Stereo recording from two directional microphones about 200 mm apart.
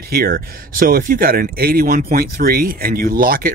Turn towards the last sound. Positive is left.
turn(degrees=-45)  # may be behind; listen again after turning